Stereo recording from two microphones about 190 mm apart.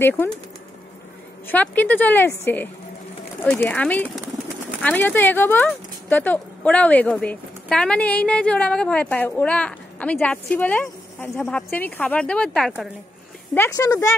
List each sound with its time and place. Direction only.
1.5 s a woman's voice: 10° left (ahead or behind)
13.6 s a woman's voice: 20° left (ahead or behind)